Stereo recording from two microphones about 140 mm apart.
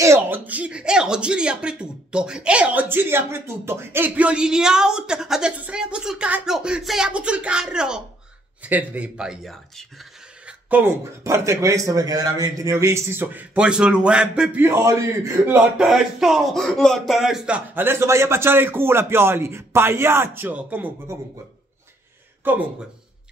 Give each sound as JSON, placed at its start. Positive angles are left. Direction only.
{"t": 0.0, "sound": "speech", "side_deg": -15}
{"t": 10.7, "sound": "speech", "side_deg": -15}
{"t": 15.8, "sound": "speech", "side_deg": 0}
{"t": 22.5, "sound": "speech", "side_deg": -15}